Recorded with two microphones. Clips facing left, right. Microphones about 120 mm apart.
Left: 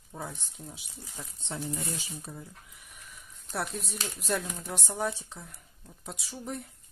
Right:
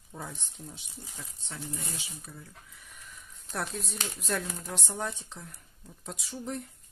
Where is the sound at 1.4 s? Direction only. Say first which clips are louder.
Left 5 dB; 25° left (ahead or behind).